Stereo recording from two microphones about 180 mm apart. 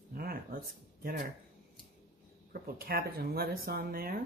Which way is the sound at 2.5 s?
55° right (ahead or behind).